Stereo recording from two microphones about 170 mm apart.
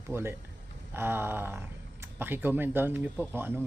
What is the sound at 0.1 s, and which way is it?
Speech, 15° right (ahead or behind).